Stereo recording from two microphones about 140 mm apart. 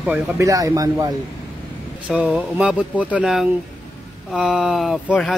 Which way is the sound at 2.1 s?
5° right (ahead or behind).